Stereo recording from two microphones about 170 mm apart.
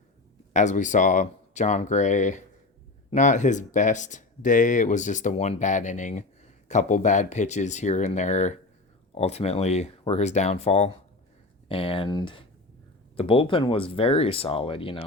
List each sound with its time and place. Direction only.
0.5 s speech: 45° left (ahead or behind)